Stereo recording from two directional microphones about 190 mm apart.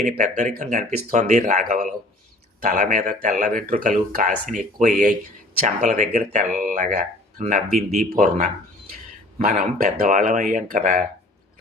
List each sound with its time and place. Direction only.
0.0 s speech: 40° right (ahead or behind)
9.5 s speech: 45° right (ahead or behind)